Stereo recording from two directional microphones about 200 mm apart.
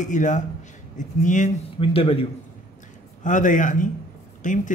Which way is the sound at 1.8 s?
30° left (ahead or behind).